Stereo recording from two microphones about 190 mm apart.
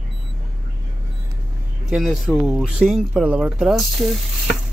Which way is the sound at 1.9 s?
Centre (ahead or behind).